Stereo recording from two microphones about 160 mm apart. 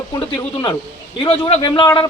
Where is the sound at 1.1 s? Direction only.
35° left (ahead or behind).